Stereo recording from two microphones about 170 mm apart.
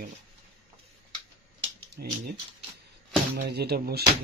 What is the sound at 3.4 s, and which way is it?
Speech, 70° right (ahead or behind).